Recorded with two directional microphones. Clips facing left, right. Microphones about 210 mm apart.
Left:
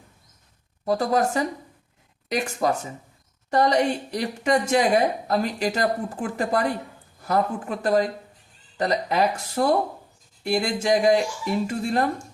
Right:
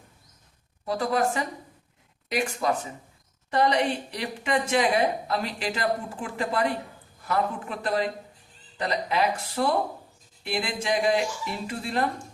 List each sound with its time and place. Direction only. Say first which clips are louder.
0.9 s a woman's voice: left 3 dB; 40° left (ahead or behind)
3.5 s a woman's voice: left 3 dB; 45° left (ahead or behind)